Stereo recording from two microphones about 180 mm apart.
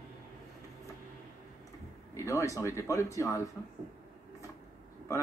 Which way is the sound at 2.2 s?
15° left (ahead or behind).